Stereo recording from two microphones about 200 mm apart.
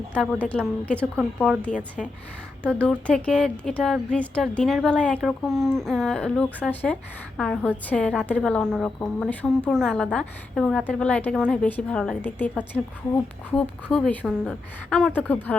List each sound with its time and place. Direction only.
0.1 s a woman's voice: 5° left (ahead or behind)